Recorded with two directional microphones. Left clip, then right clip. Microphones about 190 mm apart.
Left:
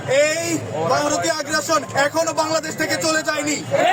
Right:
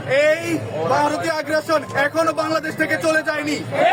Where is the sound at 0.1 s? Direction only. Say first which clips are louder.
Right 1 dB; centre (ahead or behind).